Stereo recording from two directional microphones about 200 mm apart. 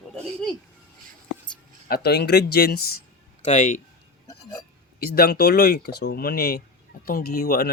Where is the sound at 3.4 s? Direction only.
40° left (ahead or behind).